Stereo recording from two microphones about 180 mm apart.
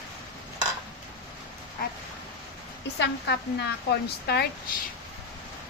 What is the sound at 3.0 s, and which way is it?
A woman's voice, 65° left (ahead or behind).